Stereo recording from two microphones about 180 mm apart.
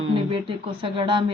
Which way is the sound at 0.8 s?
25° right (ahead or behind).